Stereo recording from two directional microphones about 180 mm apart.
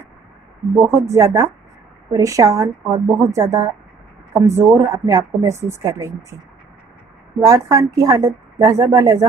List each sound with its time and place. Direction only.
0.7 s a woman's voice: 15° right (ahead or behind)
7.3 s a woman's voice: 20° right (ahead or behind)